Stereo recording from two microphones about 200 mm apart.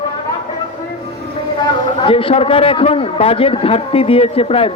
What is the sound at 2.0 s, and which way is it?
A man's voice, 25° left (ahead or behind).